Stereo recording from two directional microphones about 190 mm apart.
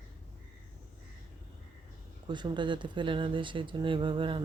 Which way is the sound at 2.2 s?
25° right (ahead or behind).